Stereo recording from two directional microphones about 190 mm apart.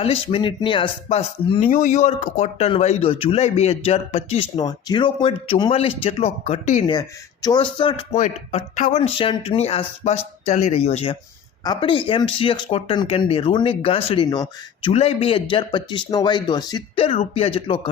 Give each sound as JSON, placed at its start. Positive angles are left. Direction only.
{"t": 0.0, "sound": "speech", "side_deg": 30}
{"t": 1.7, "sound": "speech", "side_deg": 40}
{"t": 7.4, "sound": "speech", "side_deg": 25}
{"t": 8.1, "sound": "speech", "side_deg": 40}